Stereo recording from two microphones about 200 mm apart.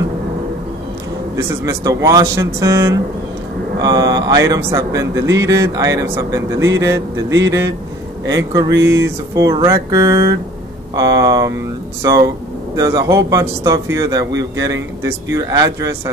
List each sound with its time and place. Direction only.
1.3 s speech: 15° right (ahead or behind)
8.5 s speech: 15° right (ahead or behind)